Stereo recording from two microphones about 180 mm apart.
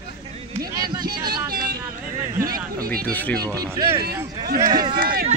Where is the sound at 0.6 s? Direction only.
20° right (ahead or behind).